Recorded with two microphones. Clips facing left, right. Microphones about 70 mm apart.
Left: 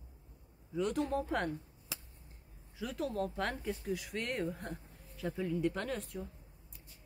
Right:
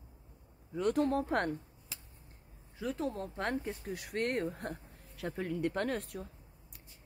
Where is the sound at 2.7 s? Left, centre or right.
Right.